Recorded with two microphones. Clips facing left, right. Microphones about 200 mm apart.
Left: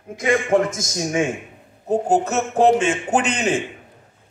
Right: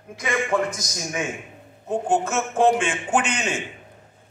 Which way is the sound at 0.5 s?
45° left (ahead or behind).